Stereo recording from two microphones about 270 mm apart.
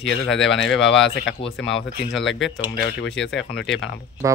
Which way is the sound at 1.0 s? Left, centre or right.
Left.